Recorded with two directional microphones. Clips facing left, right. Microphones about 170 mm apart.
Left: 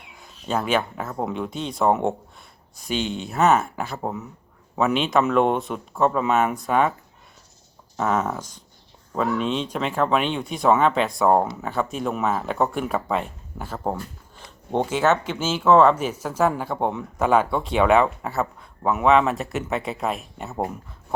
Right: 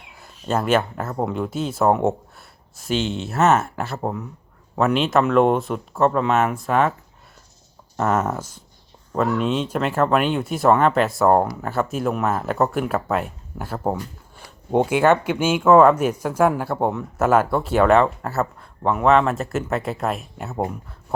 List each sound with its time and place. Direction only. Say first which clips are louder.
0.5 s speech: right 3 dB; 5° right (ahead or behind)
7.9 s speech: right 2 dB; 5° right (ahead or behind)